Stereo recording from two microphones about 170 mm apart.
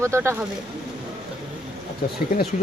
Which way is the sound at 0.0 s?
15° right (ahead or behind).